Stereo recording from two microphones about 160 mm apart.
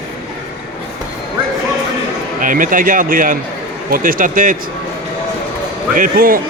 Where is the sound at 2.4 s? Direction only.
55° right (ahead or behind).